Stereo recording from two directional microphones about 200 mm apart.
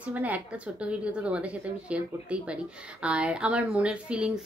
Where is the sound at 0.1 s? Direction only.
10° right (ahead or behind).